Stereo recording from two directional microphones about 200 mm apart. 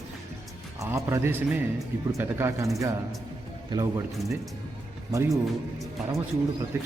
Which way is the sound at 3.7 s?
25° right (ahead or behind).